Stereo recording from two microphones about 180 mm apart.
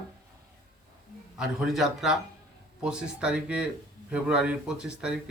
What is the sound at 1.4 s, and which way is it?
Speech, centre (ahead or behind).